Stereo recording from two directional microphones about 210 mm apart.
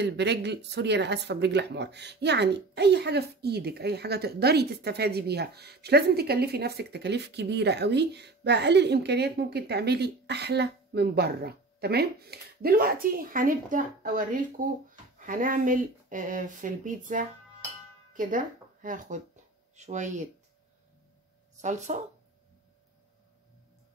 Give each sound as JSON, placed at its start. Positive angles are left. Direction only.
{"t": 0.0, "sound": "speech", "side_deg": -55}
{"t": 21.5, "sound": "speech", "side_deg": -35}